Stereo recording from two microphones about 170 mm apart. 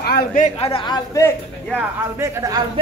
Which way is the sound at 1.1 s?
15° left (ahead or behind).